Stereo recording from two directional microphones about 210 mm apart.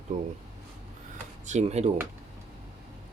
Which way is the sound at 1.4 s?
30° right (ahead or behind).